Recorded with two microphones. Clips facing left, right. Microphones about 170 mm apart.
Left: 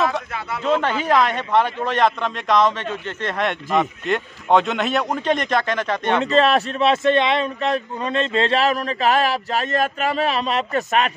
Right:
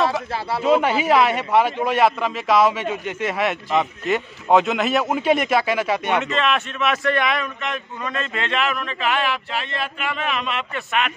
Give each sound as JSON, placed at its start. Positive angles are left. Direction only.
{"t": 0.7, "sound": "a man's voice", "side_deg": -10}
{"t": 6.2, "sound": "a man's voice", "side_deg": 35}